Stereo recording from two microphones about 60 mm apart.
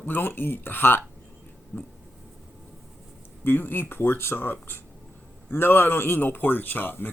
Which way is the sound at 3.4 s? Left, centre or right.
Left.